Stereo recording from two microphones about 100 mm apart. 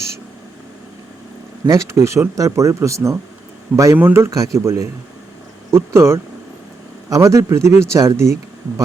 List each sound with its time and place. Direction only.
1.6 s speech: 30° right (ahead or behind)